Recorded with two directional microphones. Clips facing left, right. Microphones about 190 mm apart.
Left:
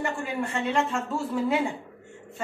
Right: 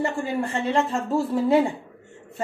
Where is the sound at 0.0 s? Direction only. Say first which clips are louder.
Right 4 dB; 35° right (ahead or behind).